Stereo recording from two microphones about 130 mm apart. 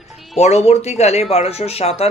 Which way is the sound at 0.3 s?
55° left (ahead or behind).